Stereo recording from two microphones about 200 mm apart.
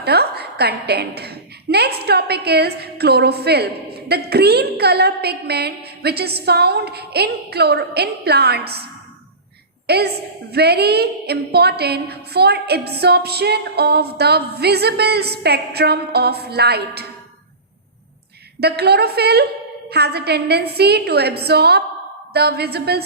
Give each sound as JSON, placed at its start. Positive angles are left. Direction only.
{"t": 0.0, "sound": "a woman's voice", "side_deg": -55}
{"t": 18.6, "sound": "a woman's voice", "side_deg": -55}